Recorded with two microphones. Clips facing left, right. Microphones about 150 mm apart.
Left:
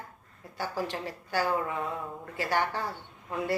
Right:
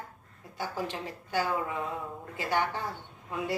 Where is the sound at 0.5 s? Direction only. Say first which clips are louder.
Left 1 dB; 15° right (ahead or behind).